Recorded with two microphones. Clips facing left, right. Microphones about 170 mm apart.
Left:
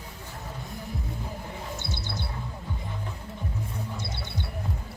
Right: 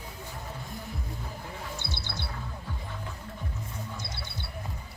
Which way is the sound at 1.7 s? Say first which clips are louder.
Left 3 dB; 45° left (ahead or behind).